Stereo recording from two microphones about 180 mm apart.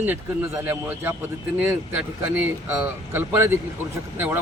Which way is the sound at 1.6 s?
10° right (ahead or behind).